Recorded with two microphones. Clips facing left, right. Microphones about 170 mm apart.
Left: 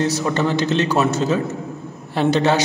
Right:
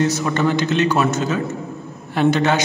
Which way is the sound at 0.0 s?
35° left (ahead or behind).